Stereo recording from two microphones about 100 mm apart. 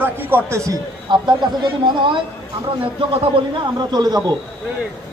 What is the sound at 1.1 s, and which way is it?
Speech, 45° right (ahead or behind).